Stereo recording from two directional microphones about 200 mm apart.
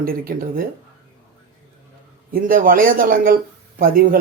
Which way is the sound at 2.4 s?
45° right (ahead or behind).